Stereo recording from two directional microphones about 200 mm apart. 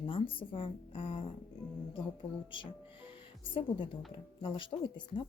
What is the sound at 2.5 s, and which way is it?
Music, 25° left (ahead or behind).